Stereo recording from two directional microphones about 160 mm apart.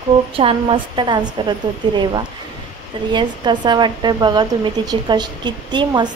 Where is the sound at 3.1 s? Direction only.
30° right (ahead or behind).